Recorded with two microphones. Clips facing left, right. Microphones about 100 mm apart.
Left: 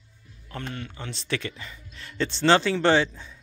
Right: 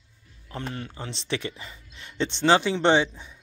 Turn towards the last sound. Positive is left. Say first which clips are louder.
# even
turn(degrees=-15)  # may be behind; listen again after turning